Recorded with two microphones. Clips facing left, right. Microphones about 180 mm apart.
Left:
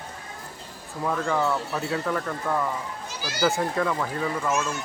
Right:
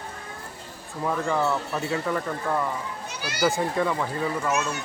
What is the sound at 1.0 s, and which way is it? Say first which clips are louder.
Speech: even; 5° right (ahead or behind).